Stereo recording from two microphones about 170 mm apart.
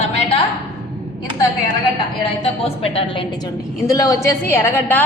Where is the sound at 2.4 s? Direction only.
35° left (ahead or behind).